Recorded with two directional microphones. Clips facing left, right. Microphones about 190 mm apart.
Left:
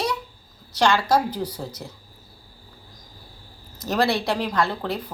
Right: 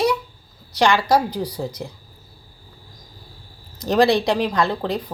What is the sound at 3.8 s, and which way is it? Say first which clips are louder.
A woman's voice: right 6 dB; 15° right (ahead or behind).